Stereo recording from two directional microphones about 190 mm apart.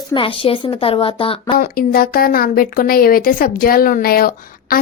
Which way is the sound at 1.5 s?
50° left (ahead or behind).